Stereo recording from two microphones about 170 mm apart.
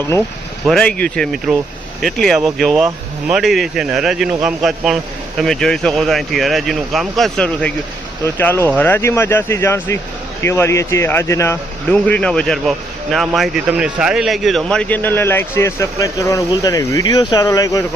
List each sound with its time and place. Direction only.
0.6 s speech: 5° left (ahead or behind); by 17.8 s 20° left (ahead or behind)